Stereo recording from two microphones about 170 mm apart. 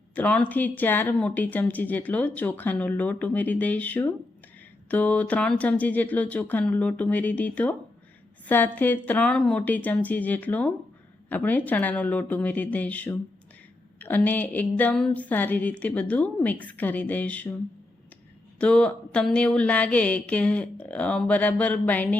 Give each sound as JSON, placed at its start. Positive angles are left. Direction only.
{"t": 0.1, "sound": "speech", "side_deg": 10}
{"t": 18.6, "sound": "speech", "side_deg": 5}